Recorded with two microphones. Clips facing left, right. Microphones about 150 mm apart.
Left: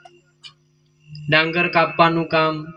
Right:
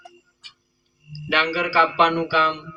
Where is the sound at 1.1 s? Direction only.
90° left.